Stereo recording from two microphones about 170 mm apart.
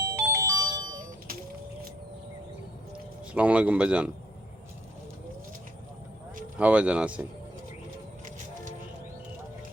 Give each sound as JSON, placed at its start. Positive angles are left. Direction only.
{"t": 0.0, "sound": "music", "side_deg": -15}
{"t": 3.3, "sound": "a man's voice", "side_deg": -10}
{"t": 6.6, "sound": "a man's voice", "side_deg": -5}